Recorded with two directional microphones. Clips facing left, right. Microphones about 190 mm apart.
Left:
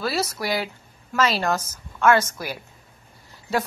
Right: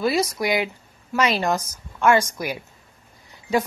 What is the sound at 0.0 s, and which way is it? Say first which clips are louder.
A woman's voice: right 4 dB; 15° right (ahead or behind).